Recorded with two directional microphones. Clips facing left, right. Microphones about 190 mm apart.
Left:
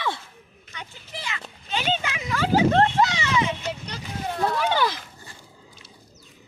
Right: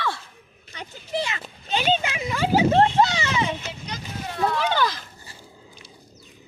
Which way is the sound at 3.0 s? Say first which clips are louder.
Right 1 dB; 30° right (ahead or behind).